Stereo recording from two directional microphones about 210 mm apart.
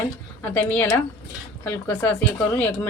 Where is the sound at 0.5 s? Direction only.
5° left (ahead or behind).